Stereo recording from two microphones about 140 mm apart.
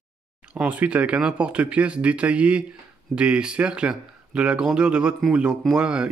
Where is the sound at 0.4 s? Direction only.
10° right (ahead or behind).